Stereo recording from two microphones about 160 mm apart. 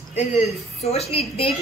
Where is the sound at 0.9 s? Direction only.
35° left (ahead or behind).